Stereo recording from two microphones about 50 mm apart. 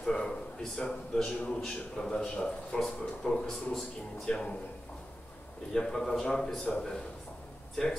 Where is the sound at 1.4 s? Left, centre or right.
Centre.